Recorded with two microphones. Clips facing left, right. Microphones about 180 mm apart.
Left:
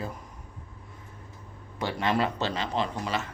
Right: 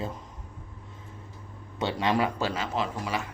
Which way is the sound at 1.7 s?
20° right (ahead or behind).